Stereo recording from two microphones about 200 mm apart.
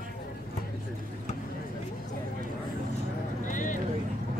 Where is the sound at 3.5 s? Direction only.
40° left (ahead or behind).